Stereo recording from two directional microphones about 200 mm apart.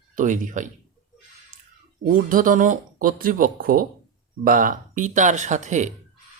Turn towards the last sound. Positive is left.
turn(degrees=-35)  # may be behind; listen again after turning